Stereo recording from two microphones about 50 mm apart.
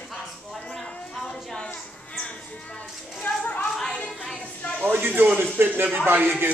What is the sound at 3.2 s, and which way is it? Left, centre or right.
Speech, left.